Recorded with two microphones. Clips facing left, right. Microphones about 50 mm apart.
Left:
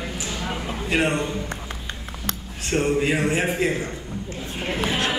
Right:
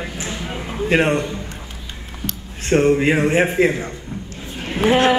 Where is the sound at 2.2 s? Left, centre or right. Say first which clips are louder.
Right 2 dB; centre.